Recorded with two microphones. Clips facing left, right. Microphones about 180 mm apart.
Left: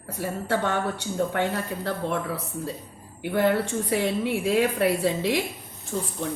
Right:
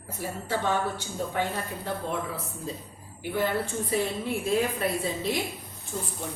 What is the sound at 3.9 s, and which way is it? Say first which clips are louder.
Speech: left 4 dB; 80° left.